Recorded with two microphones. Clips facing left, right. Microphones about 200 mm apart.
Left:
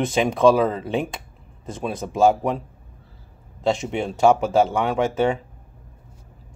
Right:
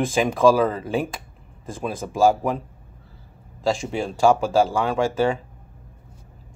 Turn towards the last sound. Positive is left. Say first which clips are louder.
# even
turn(degrees=25)  # may be behind; listen again after turning